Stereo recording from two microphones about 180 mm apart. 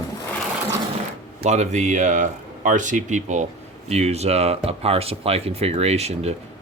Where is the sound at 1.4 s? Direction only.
40° right (ahead or behind).